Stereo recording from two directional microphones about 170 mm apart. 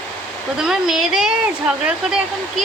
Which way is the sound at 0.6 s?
5° right (ahead or behind).